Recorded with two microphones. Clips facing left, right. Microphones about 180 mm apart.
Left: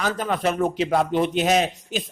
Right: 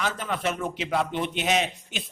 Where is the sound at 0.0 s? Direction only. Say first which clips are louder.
Left 5 dB; 40° left (ahead or behind).